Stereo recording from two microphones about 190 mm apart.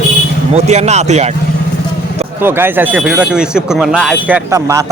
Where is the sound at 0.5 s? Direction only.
35° right (ahead or behind).